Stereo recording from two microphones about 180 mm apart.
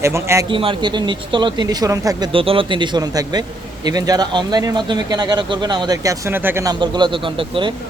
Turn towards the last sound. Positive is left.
turn(degrees=-30)  # may be behind; listen again after turning